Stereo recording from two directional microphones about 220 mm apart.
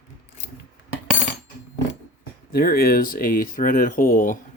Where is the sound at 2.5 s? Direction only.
45° left (ahead or behind).